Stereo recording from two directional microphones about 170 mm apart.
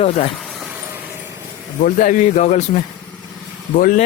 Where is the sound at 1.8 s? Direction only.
50° left (ahead or behind).